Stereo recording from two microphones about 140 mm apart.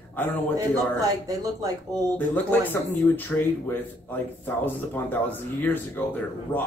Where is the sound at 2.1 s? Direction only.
15° left (ahead or behind).